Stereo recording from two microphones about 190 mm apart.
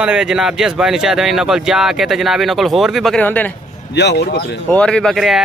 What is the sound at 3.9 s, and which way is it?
Speech, 65° left (ahead or behind).